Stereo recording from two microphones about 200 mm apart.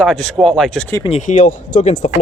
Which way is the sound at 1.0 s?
35° left (ahead or behind).